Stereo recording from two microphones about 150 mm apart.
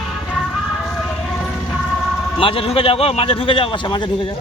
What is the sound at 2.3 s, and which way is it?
A man's voice, 35° left (ahead or behind).